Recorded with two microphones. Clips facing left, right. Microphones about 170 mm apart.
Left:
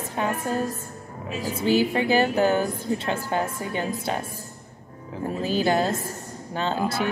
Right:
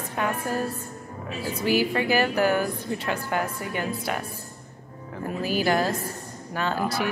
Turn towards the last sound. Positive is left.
turn(degrees=25)  # may be behind; listen again after turning